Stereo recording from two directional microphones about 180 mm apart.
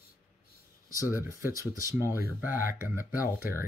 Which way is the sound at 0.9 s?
15° right (ahead or behind).